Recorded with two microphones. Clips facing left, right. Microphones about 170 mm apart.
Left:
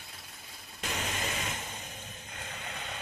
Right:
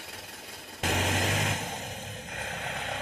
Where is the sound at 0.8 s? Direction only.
85° right.